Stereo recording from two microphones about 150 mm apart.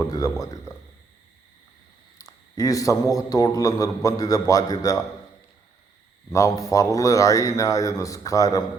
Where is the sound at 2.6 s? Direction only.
25° left (ahead or behind).